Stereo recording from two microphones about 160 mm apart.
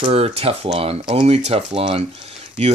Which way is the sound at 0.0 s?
40° right (ahead or behind).